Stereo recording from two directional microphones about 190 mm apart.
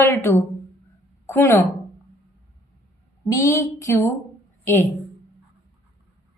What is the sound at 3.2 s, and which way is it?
A woman's voice, 15° left (ahead or behind).